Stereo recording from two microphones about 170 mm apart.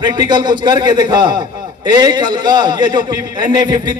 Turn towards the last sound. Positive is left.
turn(degrees=-25)  # may be behind; listen again after turning